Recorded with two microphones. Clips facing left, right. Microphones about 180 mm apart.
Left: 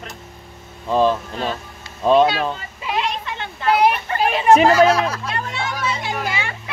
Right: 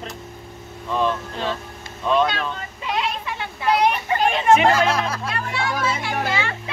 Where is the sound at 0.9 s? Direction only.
35° left (ahead or behind).